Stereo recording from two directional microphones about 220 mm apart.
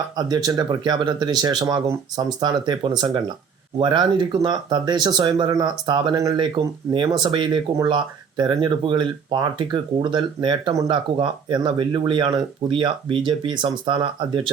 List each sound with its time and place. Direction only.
0.2 s speech: 15° right (ahead or behind)